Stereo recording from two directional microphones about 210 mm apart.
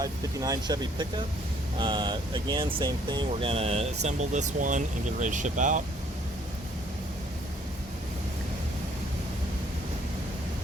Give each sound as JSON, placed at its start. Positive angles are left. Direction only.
{"t": 0.0, "sound": "speech", "side_deg": -15}